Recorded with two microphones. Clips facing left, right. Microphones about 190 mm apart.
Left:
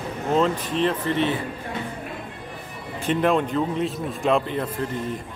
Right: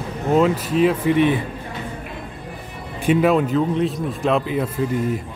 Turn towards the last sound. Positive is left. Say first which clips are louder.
# right 3 dB
turn(degrees=-5)  # may be behind; listen again after turning